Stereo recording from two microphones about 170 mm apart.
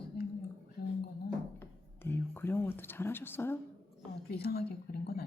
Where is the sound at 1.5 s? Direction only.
15° left (ahead or behind).